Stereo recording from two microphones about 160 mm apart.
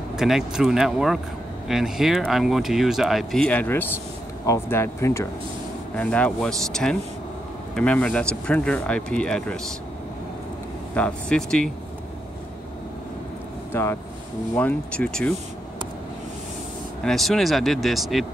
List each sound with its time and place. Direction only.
0.1 s speech: 5° right (ahead or behind)
11.0 s speech: 5° left (ahead or behind)
13.7 s speech: 15° left (ahead or behind)
17.0 s speech: centre (ahead or behind)